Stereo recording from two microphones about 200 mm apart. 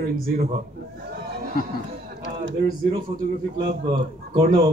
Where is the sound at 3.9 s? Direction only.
25° right (ahead or behind).